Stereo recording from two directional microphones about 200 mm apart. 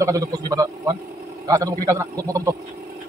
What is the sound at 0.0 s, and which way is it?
A man's voice, 15° right (ahead or behind).